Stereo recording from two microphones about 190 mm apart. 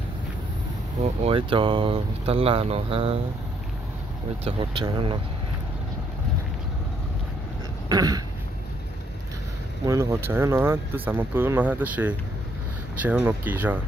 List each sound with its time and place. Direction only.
1.2 s speech: 30° right (ahead or behind)
4.5 s speech: 30° right (ahead or behind)
7.9 s speech: 20° right (ahead or behind)
9.8 s speech: 15° right (ahead or behind)